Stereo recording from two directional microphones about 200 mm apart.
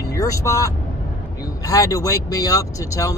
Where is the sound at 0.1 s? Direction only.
15° left (ahead or behind).